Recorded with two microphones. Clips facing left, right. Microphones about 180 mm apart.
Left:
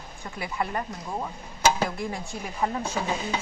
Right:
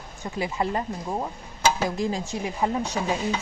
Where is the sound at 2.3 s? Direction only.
20° right (ahead or behind).